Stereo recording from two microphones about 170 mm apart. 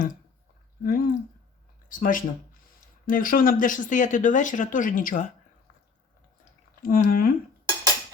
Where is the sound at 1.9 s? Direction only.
55° left (ahead or behind).